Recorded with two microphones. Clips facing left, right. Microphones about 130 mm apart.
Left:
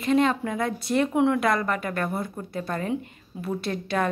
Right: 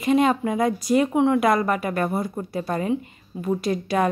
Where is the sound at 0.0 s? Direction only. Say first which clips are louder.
Right 3 dB; 10° right (ahead or behind).